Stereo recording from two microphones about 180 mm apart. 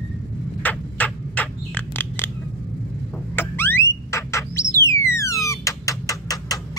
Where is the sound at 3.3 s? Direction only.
10° left (ahead or behind).